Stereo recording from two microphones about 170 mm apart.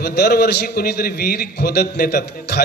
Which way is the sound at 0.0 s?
65° left (ahead or behind).